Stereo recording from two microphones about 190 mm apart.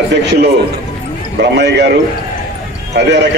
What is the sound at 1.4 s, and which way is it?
Speech, 65° right (ahead or behind).